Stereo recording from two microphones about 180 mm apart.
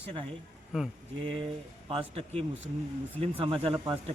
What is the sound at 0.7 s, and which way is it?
Speech, 5° right (ahead or behind).